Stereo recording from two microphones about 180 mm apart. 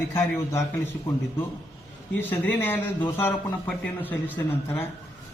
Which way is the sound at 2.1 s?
10° left (ahead or behind).